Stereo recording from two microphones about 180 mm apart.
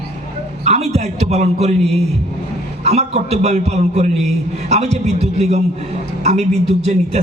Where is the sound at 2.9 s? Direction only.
35° right (ahead or behind).